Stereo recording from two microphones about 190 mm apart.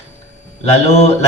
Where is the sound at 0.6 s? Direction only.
30° left (ahead or behind).